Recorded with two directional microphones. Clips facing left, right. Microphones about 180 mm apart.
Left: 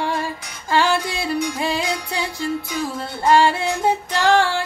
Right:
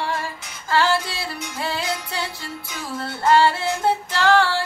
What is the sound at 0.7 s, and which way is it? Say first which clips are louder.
Music: left 1 dB; 15° left (ahead or behind).